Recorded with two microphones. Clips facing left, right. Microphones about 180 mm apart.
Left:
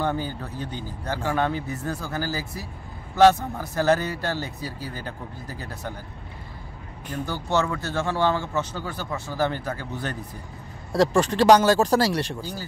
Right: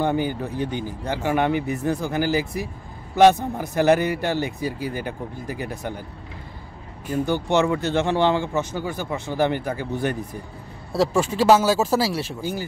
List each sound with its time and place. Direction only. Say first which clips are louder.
0.0 s speech: right 5 dB; 15° right (ahead or behind)
0.6 s speech: right 7 dB; 60° right (ahead or behind)
1.0 s speech: right 3 dB; 15° right (ahead or behind)
7.2 s speech: right 4 dB; 20° right (ahead or behind)
10.9 s speech: left 1 dB; 5° right (ahead or behind)